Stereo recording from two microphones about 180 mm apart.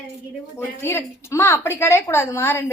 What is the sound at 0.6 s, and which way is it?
A woman's voice, 15° left (ahead or behind).